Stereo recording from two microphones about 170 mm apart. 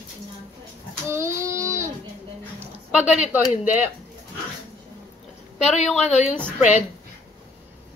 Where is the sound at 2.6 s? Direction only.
5° right (ahead or behind).